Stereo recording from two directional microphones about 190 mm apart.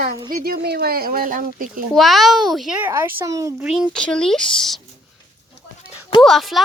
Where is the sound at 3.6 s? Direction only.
5° right (ahead or behind).